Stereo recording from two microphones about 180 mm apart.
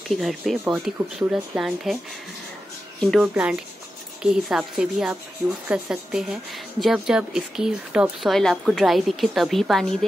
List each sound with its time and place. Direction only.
0.1 s speech: centre (ahead or behind)
3.0 s speech: centre (ahead or behind)